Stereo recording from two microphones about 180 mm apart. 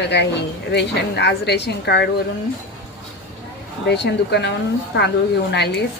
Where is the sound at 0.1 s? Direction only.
75° left (ahead or behind).